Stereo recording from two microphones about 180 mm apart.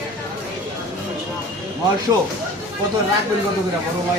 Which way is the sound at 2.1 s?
20° right (ahead or behind).